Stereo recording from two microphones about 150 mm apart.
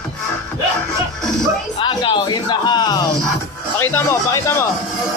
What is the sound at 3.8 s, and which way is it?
Music, 15° left (ahead or behind).